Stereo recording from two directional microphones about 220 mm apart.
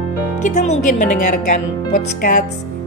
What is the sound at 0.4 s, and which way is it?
Speech, 35° left (ahead or behind).